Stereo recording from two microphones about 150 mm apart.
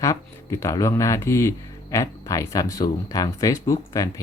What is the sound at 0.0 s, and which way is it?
Speech, 20° left (ahead or behind).